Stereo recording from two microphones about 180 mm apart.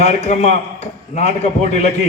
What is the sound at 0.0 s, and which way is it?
A man's voice, 40° left (ahead or behind).